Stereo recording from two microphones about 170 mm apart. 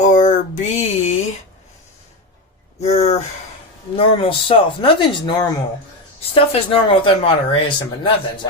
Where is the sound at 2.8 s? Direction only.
40° left (ahead or behind).